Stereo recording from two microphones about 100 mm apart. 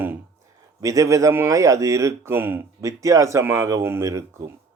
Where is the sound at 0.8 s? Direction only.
35° right (ahead or behind).